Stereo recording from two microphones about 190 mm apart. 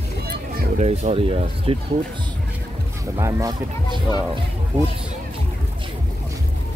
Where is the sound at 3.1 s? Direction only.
20° right (ahead or behind).